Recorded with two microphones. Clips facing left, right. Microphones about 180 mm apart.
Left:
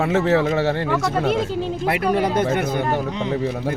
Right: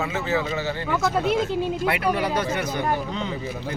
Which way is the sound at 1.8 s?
40° left (ahead or behind).